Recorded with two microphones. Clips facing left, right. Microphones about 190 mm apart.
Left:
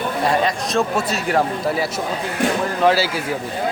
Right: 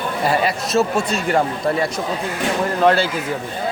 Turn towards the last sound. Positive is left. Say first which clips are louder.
# right 1 dB
turn(degrees=5)  # may be behind; listen again after turning